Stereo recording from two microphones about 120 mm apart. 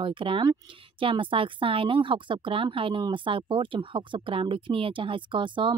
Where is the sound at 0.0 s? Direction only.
45° right (ahead or behind).